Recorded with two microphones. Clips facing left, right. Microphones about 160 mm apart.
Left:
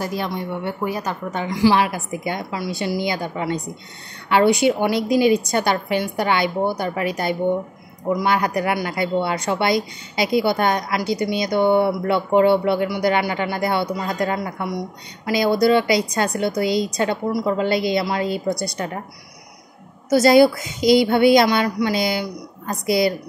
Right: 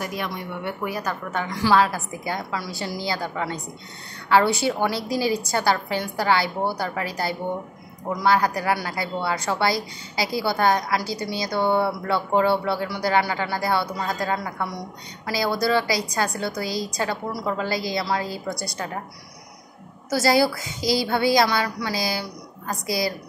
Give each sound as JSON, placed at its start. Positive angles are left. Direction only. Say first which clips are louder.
{"t": 0.0, "sound": "a woman's voice", "louder": "left 5 dB", "side_deg": 30}
{"t": 20.1, "sound": "a woman's voice", "louder": "left 7 dB", "side_deg": 20}